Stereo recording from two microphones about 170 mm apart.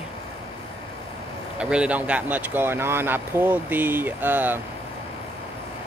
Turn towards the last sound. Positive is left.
turn(degrees=-10)  # may be behind; listen again after turning